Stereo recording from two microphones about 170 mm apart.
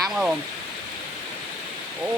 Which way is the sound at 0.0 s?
5° right (ahead or behind).